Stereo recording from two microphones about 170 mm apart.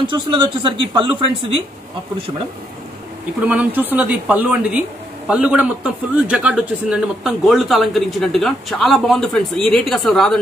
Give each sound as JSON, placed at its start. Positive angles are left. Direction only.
{"t": 0.0, "sound": "speech", "side_deg": -30}
{"t": 3.4, "sound": "speech", "side_deg": -10}